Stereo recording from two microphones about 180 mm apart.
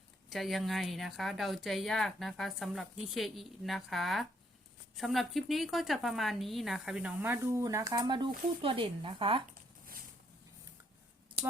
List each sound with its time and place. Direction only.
0.3 s a woman's voice: centre (ahead or behind); by 9.4 s 30° right (ahead or behind)